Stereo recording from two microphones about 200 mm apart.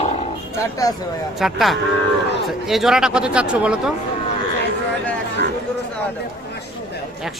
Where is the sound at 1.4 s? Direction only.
Centre (ahead or behind).